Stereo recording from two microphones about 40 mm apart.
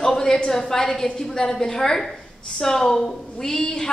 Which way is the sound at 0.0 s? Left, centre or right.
Centre.